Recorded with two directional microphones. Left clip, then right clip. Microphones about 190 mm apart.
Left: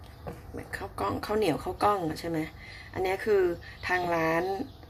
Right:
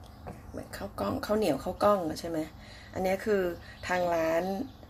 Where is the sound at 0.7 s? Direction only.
15° right (ahead or behind).